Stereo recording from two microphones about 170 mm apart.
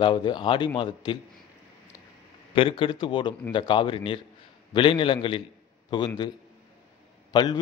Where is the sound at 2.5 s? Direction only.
30° left (ahead or behind).